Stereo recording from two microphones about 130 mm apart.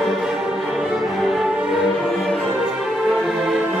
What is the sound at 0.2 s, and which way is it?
Music, 5° right (ahead or behind).